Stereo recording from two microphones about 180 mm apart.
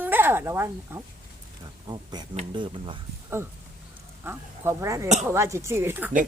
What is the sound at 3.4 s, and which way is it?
Speech, 15° right (ahead or behind).